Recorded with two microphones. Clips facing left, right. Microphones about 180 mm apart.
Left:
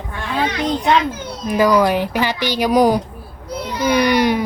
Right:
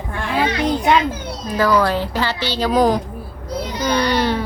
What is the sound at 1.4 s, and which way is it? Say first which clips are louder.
A woman's voice: left 3 dB; 15° left (ahead or behind).